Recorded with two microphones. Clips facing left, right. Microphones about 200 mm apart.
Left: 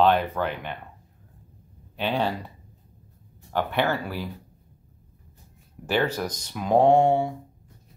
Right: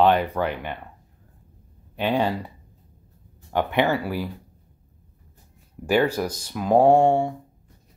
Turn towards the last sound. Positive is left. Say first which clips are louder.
# right 2 dB
turn(degrees=0)  # may be behind; listen again after turning